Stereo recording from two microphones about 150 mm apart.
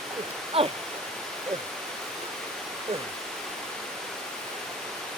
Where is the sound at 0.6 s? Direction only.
40° right (ahead or behind).